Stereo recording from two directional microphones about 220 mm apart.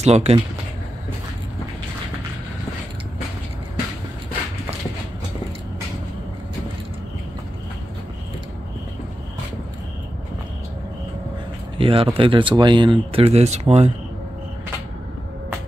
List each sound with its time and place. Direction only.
0.0 s speech: 30° right (ahead or behind)
11.8 s speech: 25° right (ahead or behind)